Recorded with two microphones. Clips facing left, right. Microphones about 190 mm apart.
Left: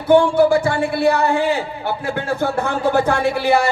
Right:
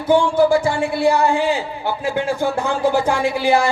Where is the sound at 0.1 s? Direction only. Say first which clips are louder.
Left 2 dB; 60° left (ahead or behind).